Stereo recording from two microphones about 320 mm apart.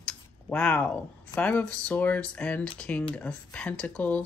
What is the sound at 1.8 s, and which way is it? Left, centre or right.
Speech, centre.